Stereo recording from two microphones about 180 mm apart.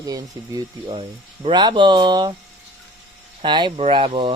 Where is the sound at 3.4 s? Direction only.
25° right (ahead or behind).